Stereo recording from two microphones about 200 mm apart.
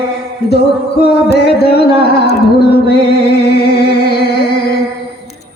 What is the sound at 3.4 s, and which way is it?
Music, 55° left (ahead or behind).